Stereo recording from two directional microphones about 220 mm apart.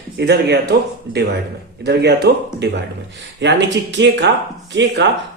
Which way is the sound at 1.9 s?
50° right (ahead or behind).